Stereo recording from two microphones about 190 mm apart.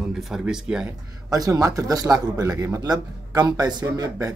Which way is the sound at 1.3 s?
20° right (ahead or behind).